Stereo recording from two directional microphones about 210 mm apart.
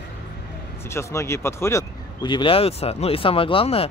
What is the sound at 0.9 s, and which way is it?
Speech, 15° left (ahead or behind).